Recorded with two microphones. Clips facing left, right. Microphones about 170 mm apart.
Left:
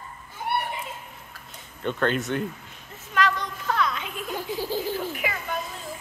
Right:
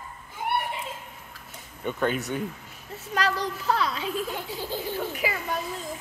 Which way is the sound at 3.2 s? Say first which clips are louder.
Left 2 dB; 35° right (ahead or behind).